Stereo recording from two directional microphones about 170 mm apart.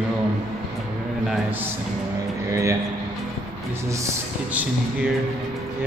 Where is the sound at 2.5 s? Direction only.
20° right (ahead or behind).